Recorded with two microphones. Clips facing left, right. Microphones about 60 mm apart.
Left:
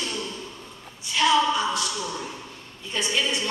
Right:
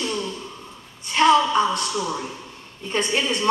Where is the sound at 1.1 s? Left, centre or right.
Right.